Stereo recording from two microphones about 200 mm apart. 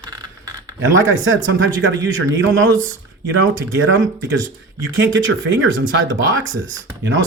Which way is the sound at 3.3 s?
75° right (ahead or behind).